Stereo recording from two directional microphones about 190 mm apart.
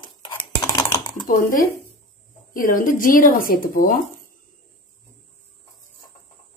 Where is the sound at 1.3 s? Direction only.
45° left (ahead or behind).